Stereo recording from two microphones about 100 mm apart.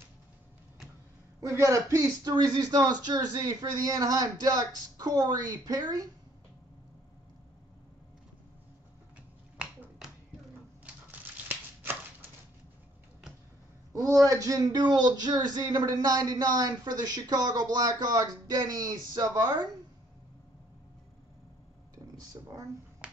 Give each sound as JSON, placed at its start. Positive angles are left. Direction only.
{"t": 1.4, "sound": "speech", "side_deg": -30}
{"t": 2.3, "sound": "speech", "side_deg": -45}
{"t": 9.6, "sound": "finger snapping", "side_deg": -5}
{"t": 11.1, "sound": "a sound", "side_deg": -20}
{"t": 14.2, "sound": "speech", "side_deg": -35}
{"t": 21.9, "sound": "a sound", "side_deg": -35}